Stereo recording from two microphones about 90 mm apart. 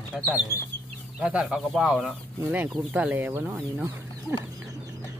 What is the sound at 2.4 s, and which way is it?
Speech, 15° right (ahead or behind).